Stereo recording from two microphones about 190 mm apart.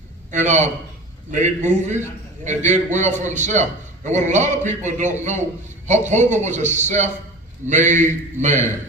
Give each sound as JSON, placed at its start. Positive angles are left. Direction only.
{"t": 0.3, "sound": "a man's voice", "side_deg": -40}